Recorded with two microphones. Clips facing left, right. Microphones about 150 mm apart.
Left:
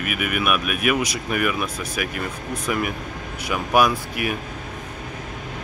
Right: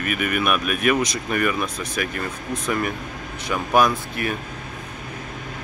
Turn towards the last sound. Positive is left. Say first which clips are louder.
# even
turn(degrees=10)  # may be behind; listen again after turning